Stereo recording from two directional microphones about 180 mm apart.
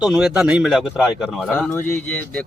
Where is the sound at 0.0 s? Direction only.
Centre (ahead or behind).